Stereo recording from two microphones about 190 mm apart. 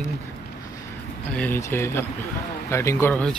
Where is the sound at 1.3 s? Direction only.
10° left (ahead or behind).